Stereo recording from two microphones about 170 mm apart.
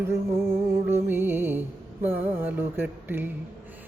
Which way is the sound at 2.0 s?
10° right (ahead or behind).